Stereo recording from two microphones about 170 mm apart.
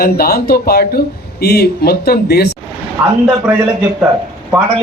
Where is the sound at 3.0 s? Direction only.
10° right (ahead or behind).